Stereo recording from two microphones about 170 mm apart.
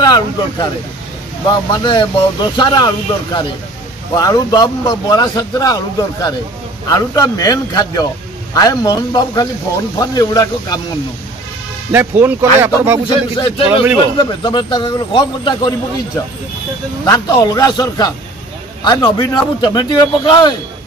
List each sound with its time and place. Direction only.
0.0 s speech: 25° left (ahead or behind)
1.7 s a man's voice: 25° left (ahead or behind)
4.1 s a man's voice: 20° left (ahead or behind)
11.9 s speech: 10° right (ahead or behind)
13.1 s a man's voice: 30° left (ahead or behind)
17.0 s a man's voice: 20° left (ahead or behind)